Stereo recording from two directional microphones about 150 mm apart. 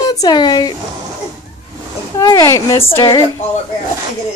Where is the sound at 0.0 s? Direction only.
25° left (ahead or behind).